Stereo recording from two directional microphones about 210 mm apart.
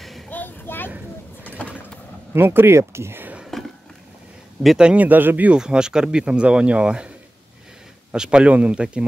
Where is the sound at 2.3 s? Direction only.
10° right (ahead or behind).